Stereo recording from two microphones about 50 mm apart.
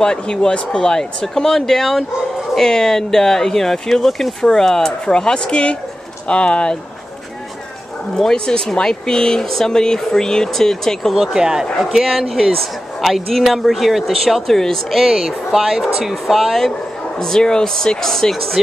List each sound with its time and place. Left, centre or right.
0.0 s speech: centre
8.1 s speech: centre
11.1 s a man's voice: centre
15.0 s a man's voice: centre
17.2 s speech: centre